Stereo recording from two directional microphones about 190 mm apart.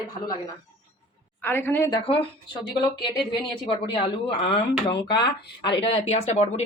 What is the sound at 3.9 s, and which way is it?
Speech, 25° left (ahead or behind).